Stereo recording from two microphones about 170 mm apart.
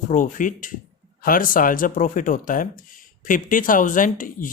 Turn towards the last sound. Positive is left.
turn(degrees=50)  # may be behind; listen again after turning